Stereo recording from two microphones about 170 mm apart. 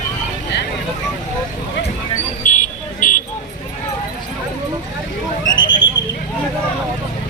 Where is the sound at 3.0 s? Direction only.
55° left (ahead or behind).